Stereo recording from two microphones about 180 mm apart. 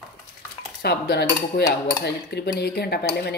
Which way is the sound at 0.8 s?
65° left (ahead or behind).